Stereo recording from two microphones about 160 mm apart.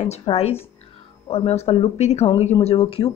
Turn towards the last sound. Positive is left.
turn(degrees=35)  # may be behind; listen again after turning